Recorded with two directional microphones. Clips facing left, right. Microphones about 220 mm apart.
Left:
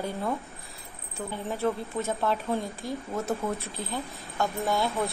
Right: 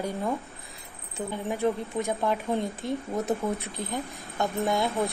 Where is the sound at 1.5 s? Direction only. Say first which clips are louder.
Right 2 dB; 15° right (ahead or behind).